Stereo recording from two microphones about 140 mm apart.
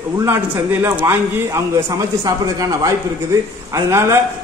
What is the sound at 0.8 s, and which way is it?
A man's voice, 20° right (ahead or behind).